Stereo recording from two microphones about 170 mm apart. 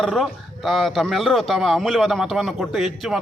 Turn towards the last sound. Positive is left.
turn(degrees=0)  # may be behind; listen again after turning